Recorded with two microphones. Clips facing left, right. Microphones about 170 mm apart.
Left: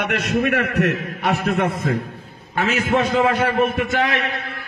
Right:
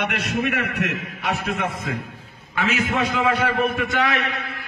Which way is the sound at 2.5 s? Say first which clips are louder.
Left 3 dB; 50° left (ahead or behind).